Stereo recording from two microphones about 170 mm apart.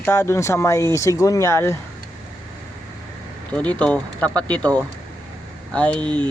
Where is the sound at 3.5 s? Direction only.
10° left (ahead or behind).